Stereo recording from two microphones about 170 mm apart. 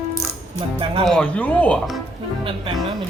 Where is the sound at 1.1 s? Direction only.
5° left (ahead or behind).